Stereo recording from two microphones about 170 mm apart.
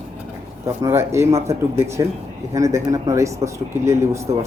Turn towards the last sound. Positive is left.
turn(degrees=-15)  # may be behind; listen again after turning